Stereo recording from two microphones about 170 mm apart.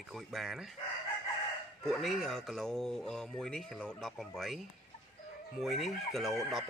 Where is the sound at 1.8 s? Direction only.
Centre (ahead or behind).